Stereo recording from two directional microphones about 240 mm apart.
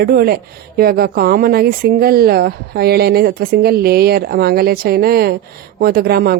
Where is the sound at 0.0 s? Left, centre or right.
Right.